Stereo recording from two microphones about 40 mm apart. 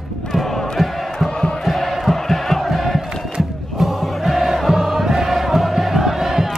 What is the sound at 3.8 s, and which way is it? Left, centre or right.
Choir, centre.